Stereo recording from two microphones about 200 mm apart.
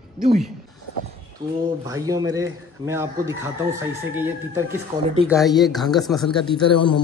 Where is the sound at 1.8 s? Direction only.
15° right (ahead or behind).